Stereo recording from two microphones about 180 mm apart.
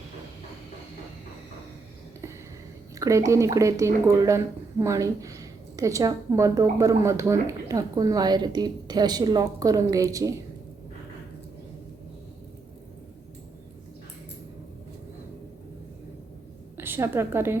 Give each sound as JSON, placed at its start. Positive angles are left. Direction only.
{"t": 2.9, "sound": "a woman's voice", "side_deg": -15}
{"t": 16.7, "sound": "a woman's voice", "side_deg": -10}